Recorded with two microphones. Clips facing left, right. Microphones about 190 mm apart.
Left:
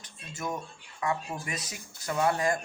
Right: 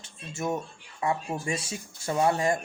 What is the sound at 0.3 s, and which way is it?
Speech, 25° right (ahead or behind).